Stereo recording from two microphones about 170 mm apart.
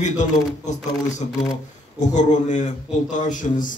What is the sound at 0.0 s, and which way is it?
Speech, 45° left (ahead or behind).